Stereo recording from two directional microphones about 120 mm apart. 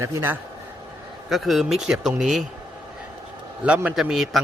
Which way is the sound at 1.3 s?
Centre (ahead or behind).